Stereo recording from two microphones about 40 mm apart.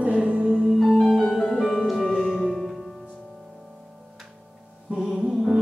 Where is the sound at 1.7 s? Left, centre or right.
Centre.